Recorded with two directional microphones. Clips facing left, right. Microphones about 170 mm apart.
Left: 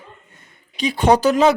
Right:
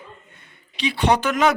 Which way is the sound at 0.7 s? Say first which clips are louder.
Left 4 dB; 45° left (ahead or behind).